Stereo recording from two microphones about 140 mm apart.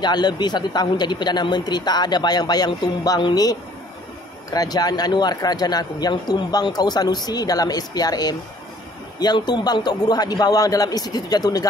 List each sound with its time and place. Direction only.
0.0 s speech: 30° left (ahead or behind)